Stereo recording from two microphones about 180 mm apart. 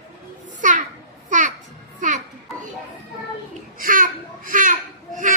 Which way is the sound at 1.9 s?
45° right (ahead or behind).